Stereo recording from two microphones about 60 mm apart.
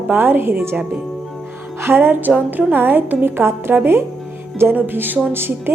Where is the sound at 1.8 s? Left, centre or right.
Right.